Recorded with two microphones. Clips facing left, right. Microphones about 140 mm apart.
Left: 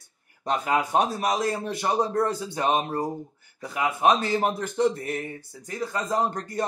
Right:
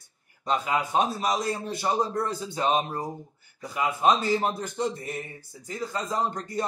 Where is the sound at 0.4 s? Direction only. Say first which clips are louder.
Left 2 dB; 50° left (ahead or behind).